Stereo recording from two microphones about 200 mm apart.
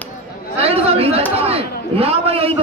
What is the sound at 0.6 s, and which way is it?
Chatter, 30° right (ahead or behind).